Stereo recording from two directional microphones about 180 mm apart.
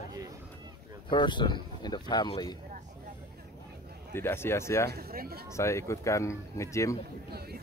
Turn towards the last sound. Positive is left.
turn(degrees=-60)  # may be behind; listen again after turning